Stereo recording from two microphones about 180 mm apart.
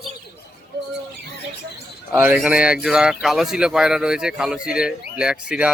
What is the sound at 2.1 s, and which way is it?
Speech, 5° right (ahead or behind).